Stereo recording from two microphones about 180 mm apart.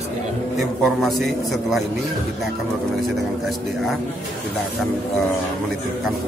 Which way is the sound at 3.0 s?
Centre (ahead or behind).